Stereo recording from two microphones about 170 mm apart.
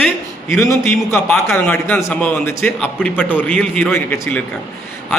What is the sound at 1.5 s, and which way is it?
A man's voice, 5° left (ahead or behind).